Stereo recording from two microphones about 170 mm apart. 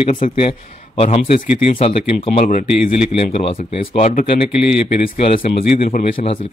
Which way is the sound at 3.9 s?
45° left (ahead or behind).